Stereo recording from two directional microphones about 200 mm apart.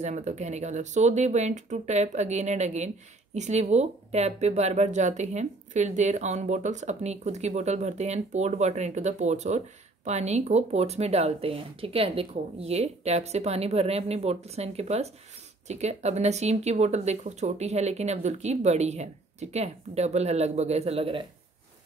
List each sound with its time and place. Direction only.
0.0 s speech: 35° right (ahead or behind)